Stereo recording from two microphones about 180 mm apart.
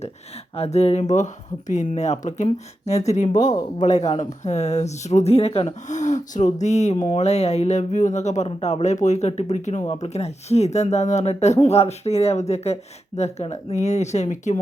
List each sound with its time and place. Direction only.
0.5 s speech: 35° left (ahead or behind)